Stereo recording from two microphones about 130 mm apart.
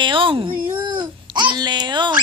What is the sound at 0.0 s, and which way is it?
Babbling, 40° right (ahead or behind).